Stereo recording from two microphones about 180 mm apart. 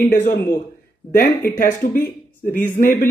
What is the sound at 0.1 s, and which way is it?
Speech, 55° left (ahead or behind).